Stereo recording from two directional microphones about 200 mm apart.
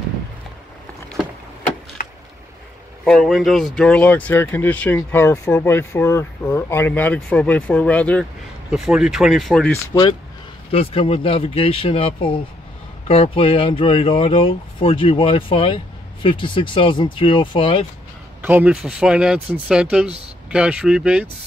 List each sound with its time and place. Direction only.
3.1 s speech: centre (ahead or behind)
10.7 s speech: 30° left (ahead or behind)
18.4 s speech: 10° right (ahead or behind)